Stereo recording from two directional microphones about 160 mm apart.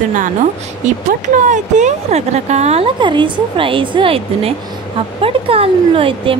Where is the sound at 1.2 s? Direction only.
50° right (ahead or behind).